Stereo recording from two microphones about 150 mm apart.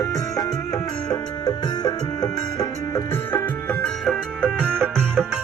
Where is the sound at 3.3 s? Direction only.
10° left (ahead or behind).